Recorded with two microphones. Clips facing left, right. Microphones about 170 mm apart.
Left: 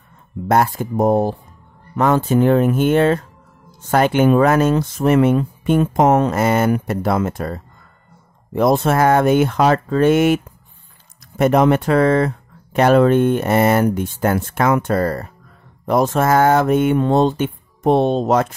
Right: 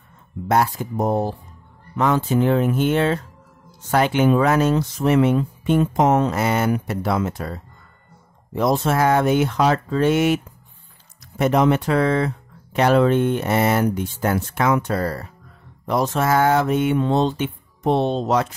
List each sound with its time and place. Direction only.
0.5 s speech: 50° left (ahead or behind)